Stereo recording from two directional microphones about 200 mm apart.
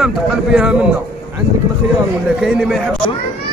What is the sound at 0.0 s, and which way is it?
Speech, 5° right (ahead or behind).